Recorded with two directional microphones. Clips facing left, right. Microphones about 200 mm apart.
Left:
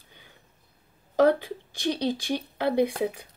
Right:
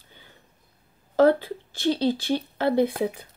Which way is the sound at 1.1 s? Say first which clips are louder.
Right 2 dB; 15° left (ahead or behind).